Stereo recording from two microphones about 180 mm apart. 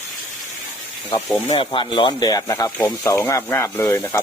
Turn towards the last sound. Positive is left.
turn(degrees=15)  # may be behind; listen again after turning